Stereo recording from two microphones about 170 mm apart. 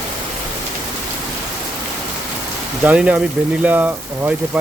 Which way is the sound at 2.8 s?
10° right (ahead or behind).